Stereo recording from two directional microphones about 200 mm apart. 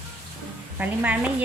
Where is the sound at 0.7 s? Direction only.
5° right (ahead or behind).